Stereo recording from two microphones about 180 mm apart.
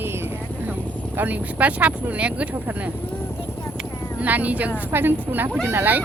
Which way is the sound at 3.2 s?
15° left (ahead or behind).